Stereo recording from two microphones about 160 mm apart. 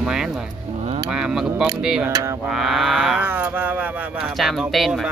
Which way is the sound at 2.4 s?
Centre (ahead or behind).